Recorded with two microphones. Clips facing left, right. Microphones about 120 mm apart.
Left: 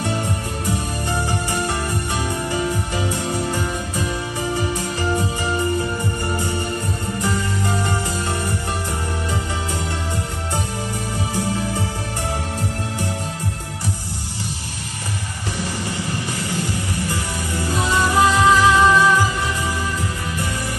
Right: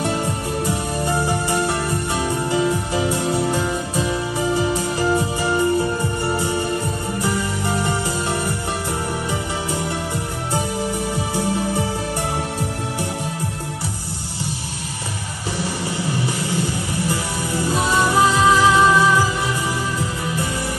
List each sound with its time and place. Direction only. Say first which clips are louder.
0.7 s music: even; 20° right (ahead or behind)
7.2 s music: even; 20° right (ahead or behind)
16.3 s music: right 2 dB; 15° right (ahead or behind)